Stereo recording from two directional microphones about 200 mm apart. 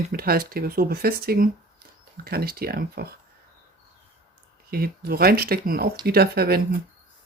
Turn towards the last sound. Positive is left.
turn(degrees=-50)  # may be behind; listen again after turning